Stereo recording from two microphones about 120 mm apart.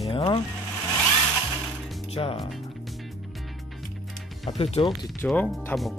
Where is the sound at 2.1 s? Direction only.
50° left (ahead or behind).